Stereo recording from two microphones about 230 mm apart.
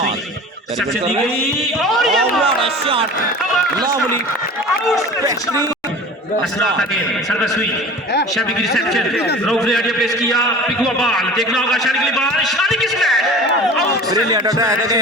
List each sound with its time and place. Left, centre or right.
1.8 s a man's voice: centre
2.6 s speech: right
7.3 s a man's voice: centre
14.1 s a man's voice: centre